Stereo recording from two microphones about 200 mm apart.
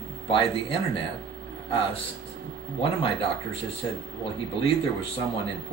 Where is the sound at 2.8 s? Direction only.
25° left (ahead or behind).